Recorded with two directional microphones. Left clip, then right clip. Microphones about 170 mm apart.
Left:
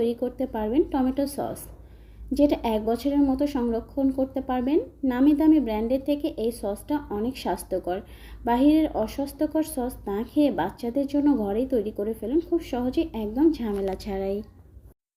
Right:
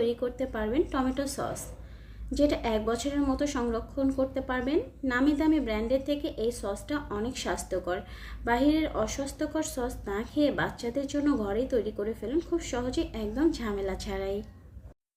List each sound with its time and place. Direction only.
0.2 s a woman's voice: 10° left (ahead or behind)
2.3 s a woman's voice: 30° right (ahead or behind)
2.8 s a woman's voice: 10° left (ahead or behind)
6.2 s a woman's voice: 30° right (ahead or behind)
6.5 s a woman's voice: 10° left (ahead or behind)
8.5 s a woman's voice: 30° right (ahead or behind)
8.8 s a woman's voice: 10° left (ahead or behind)